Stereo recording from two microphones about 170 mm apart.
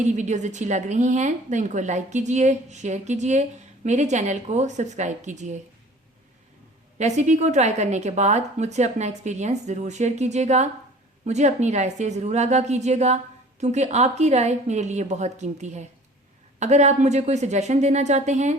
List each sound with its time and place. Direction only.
0.0 s a woman's voice: 45° right (ahead or behind)
7.0 s a woman's voice: 45° right (ahead or behind)